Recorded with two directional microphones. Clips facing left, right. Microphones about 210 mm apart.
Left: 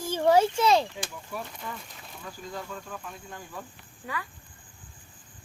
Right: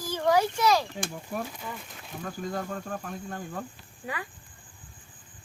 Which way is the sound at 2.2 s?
50° right (ahead or behind).